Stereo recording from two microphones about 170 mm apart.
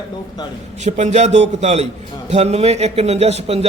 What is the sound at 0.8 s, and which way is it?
A man's voice, 45° right (ahead or behind).